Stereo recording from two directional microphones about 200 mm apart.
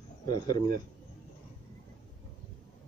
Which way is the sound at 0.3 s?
20° left (ahead or behind).